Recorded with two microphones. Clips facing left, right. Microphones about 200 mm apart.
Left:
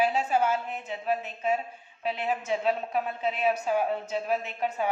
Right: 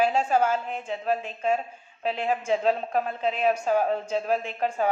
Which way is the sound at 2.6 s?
45° right (ahead or behind).